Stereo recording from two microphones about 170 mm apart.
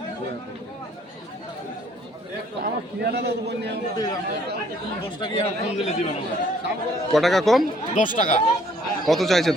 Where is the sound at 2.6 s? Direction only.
70° right (ahead or behind).